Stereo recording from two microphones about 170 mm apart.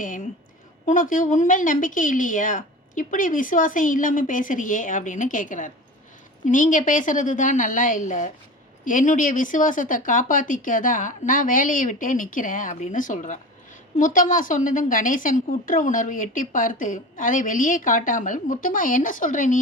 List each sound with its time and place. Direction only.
0.9 s a woman's voice: 50° left (ahead or behind)